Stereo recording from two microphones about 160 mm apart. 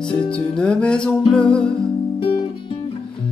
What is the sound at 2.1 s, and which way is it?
Guitar, 35° left (ahead or behind).